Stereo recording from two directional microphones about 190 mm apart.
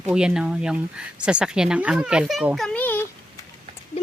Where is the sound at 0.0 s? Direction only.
5° right (ahead or behind).